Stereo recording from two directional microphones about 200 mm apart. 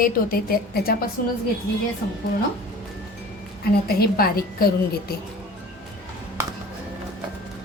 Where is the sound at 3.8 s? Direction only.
50° left (ahead or behind).